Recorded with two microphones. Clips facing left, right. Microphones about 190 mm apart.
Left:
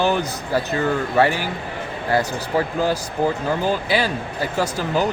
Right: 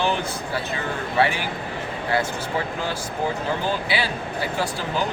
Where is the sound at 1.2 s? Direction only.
40° left (ahead or behind).